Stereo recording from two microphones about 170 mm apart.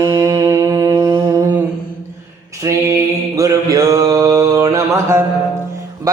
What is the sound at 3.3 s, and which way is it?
Mantra, 20° right (ahead or behind).